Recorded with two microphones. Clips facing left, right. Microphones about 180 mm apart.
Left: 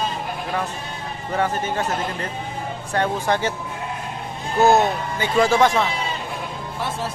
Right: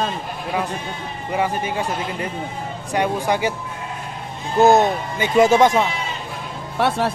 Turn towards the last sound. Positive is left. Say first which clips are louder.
# right 7 dB
turn(degrees=-70)  # may be behind; listen again after turning